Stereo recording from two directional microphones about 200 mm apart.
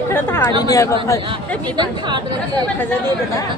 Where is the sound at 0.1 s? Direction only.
10° left (ahead or behind).